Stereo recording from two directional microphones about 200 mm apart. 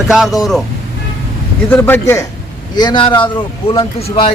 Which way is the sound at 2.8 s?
20° left (ahead or behind).